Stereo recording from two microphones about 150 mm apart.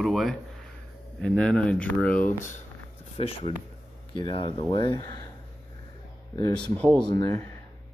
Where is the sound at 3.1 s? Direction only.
40° left (ahead or behind).